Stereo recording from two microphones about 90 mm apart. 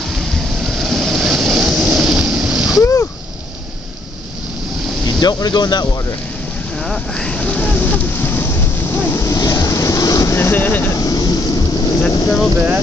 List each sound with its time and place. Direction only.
0.1 s vehicle: centre (ahead or behind)
2.7 s splash: 35° left (ahead or behind)
5.2 s speech: 50° left (ahead or behind)
6.8 s boat: 5° left (ahead or behind); by 9.2 s 25° left (ahead or behind)
9.2 s vehicle: 40° left (ahead or behind); by 10.9 s 20° left (ahead or behind)
10.9 s vehicle: 40° left (ahead or behind)
12.1 s speech: 35° left (ahead or behind)